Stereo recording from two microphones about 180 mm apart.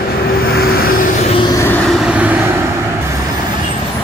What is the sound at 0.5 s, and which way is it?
Vehicle, 60° left (ahead or behind).